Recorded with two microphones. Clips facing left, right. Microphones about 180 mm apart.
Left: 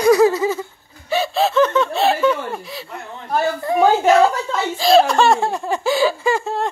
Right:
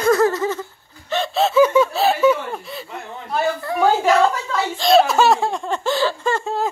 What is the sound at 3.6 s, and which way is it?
Speech, 20° left (ahead or behind).